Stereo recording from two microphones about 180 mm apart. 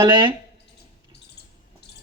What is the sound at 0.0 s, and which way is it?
Speech, 25° right (ahead or behind).